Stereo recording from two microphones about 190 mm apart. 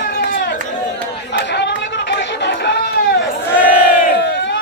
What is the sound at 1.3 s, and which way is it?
Chatter, 65° left (ahead or behind).